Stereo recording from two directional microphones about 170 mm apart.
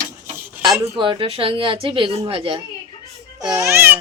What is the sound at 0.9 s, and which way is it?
Speech, 30° right (ahead or behind).